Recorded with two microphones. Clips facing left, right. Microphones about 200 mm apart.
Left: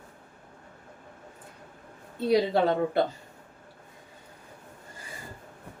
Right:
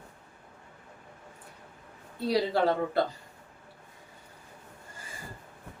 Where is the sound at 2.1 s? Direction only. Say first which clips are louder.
Left 3 dB; 20° left (ahead or behind).